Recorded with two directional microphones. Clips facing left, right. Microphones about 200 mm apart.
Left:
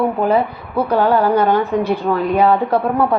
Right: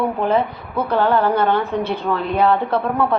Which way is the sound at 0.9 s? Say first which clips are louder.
Left 2 dB; 10° left (ahead or behind).